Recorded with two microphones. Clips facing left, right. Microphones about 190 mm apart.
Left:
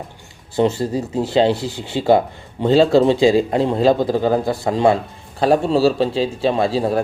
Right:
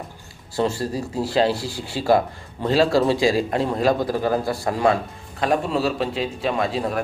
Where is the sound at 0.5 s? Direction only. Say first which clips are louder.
Left 5 dB; 20° left (ahead or behind).